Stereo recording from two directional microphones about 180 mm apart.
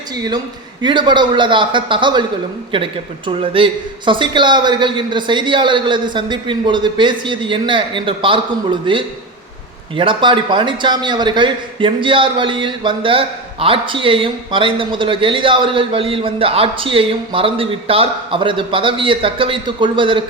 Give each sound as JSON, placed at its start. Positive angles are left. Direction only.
{"t": 0.3, "sound": "a man's voice", "side_deg": -25}